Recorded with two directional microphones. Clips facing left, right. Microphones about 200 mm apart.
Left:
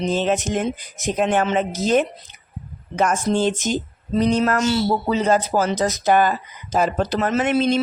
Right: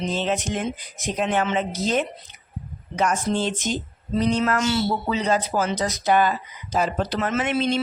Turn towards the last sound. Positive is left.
turn(degrees=45)  # may be behind; listen again after turning